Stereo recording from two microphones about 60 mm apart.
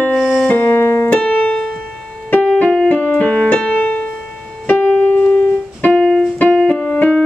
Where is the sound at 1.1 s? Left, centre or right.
Centre.